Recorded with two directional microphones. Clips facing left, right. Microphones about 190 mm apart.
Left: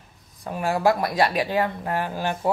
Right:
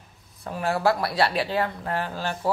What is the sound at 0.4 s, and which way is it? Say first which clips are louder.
Speech: left 2 dB; 15° left (ahead or behind).